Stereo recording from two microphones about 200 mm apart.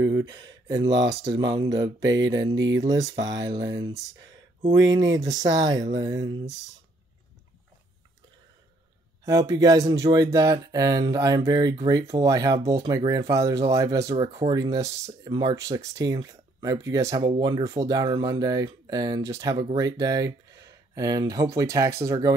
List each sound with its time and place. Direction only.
0.2 s speech: 20° right (ahead or behind)
2.1 s a sound: 65° right (ahead or behind)
2.7 s speech: 20° right (ahead or behind)
5.2 s speech: 20° right (ahead or behind)
9.2 s speech: 15° right (ahead or behind)